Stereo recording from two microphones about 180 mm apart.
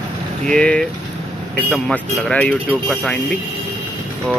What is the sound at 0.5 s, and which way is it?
Speech, 5° left (ahead or behind).